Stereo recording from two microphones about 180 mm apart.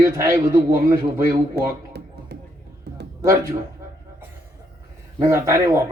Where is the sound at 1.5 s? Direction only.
65° right (ahead or behind).